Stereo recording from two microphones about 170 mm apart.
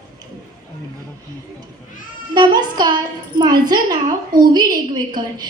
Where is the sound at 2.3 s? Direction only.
25° right (ahead or behind).